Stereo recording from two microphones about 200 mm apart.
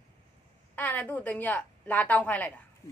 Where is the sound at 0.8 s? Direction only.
10° left (ahead or behind).